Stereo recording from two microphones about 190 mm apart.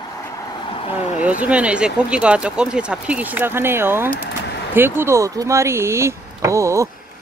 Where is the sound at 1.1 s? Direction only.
5° right (ahead or behind).